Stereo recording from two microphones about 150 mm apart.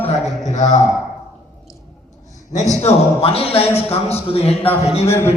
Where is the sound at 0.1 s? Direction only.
55° left (ahead or behind).